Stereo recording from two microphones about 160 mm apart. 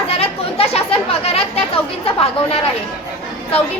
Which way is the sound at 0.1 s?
40° left (ahead or behind).